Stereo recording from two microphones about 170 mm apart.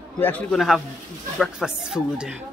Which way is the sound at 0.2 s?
10° left (ahead or behind).